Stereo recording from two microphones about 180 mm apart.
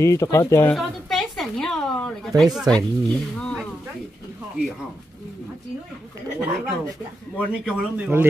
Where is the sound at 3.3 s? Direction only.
5° left (ahead or behind).